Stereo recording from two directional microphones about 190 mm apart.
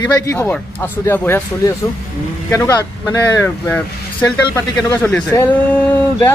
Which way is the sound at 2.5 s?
15° left (ahead or behind).